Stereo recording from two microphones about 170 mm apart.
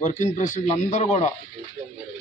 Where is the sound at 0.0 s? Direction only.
50° left (ahead or behind).